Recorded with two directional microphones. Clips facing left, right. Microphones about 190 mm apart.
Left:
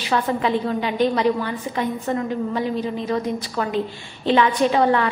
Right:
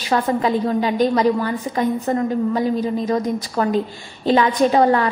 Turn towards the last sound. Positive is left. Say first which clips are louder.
# right 3 dB
turn(degrees=-40)  # may be behind; listen again after turning